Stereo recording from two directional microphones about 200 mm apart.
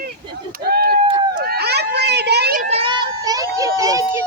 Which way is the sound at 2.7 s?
25° right (ahead or behind).